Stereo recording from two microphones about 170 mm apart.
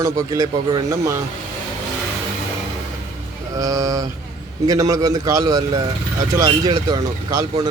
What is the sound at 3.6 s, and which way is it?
A man's voice, 20° right (ahead or behind).